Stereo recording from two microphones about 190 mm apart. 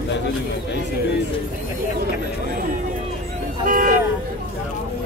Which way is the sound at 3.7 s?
45° right (ahead or behind).